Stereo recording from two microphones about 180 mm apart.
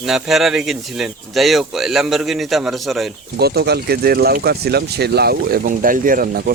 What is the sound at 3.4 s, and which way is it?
Speech, 60° right (ahead or behind).